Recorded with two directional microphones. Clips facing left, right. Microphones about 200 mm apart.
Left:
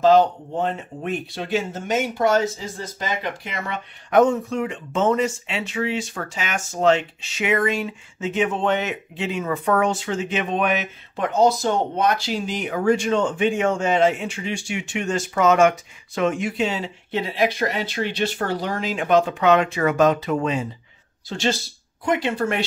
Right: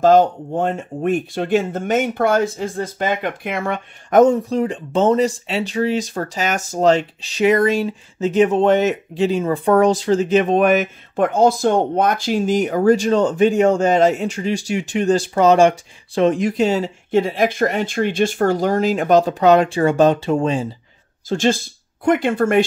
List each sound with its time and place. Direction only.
0.0 s speech: 50° right (ahead or behind); by 20.7 s 30° right (ahead or behind)
21.3 s speech: 45° right (ahead or behind)